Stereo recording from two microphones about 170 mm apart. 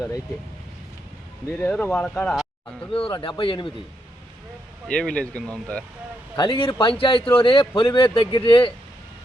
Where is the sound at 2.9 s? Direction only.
30° left (ahead or behind).